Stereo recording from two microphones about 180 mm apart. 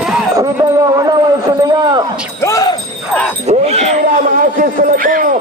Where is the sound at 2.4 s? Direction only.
20° left (ahead or behind).